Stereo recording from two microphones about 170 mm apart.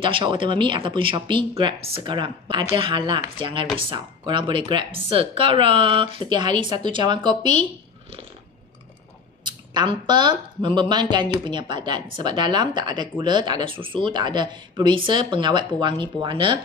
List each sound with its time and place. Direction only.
0.0 s speech: 30° right (ahead or behind)
9.4 s speech: 25° right (ahead or behind)